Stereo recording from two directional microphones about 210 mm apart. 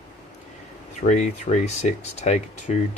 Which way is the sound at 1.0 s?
35° left (ahead or behind).